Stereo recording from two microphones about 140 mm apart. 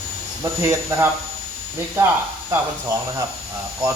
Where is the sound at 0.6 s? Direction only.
20° right (ahead or behind).